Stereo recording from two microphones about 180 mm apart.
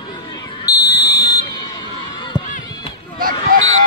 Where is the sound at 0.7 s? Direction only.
20° left (ahead or behind).